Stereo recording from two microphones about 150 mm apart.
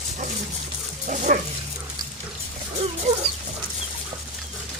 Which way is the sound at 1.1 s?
55° right (ahead or behind).